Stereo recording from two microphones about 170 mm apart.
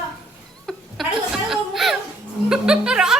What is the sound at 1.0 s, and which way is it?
Chuckle, centre (ahead or behind).